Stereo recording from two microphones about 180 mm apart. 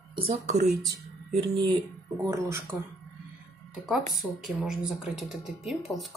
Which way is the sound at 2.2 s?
15° right (ahead or behind).